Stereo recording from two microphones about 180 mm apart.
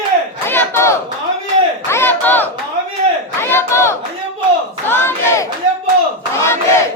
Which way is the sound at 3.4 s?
15° left (ahead or behind).